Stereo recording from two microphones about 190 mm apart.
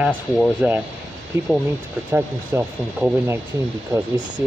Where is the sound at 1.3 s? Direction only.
15° right (ahead or behind).